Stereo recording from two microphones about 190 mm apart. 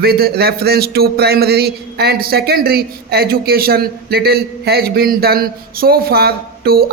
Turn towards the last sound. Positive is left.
turn(degrees=-55)  # may be behind; listen again after turning